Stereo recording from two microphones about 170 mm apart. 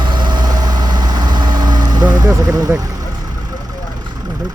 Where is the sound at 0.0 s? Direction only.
25° right (ahead or behind).